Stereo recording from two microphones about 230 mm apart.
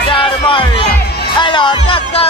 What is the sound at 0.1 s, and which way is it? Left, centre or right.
Music, left.